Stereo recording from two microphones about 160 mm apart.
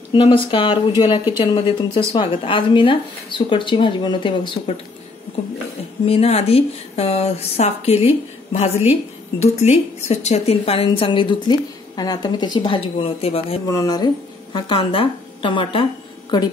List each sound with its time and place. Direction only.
0.1 s a woman's voice: 30° left (ahead or behind)
6.0 s a woman's voice: 40° left (ahead or behind)
13.7 s speech: 25° left (ahead or behind)